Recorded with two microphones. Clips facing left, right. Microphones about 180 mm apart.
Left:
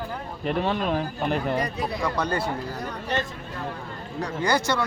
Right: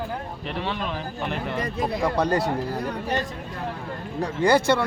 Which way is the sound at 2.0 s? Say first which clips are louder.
Right 4 dB; 35° right (ahead or behind).